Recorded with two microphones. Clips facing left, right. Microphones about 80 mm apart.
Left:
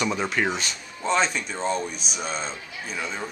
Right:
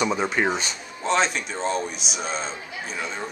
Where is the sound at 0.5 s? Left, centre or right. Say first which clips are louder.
Right 2 dB; right.